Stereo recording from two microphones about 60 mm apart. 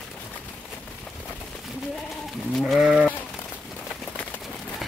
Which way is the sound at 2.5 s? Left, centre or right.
Centre.